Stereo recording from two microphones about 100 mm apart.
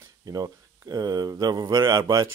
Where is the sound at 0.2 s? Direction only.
40° right (ahead or behind).